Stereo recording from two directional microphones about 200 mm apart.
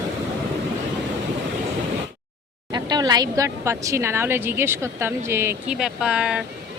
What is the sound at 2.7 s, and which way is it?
Speech, 20° right (ahead or behind).